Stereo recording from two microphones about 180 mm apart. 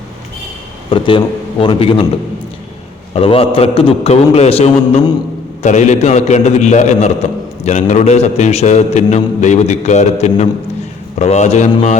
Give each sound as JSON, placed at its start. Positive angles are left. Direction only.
{"t": 0.9, "sound": "a man's voice", "side_deg": 30}
{"t": 3.1, "sound": "a man's voice", "side_deg": 35}